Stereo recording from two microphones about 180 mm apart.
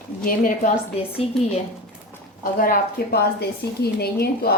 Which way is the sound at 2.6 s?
55° left (ahead or behind).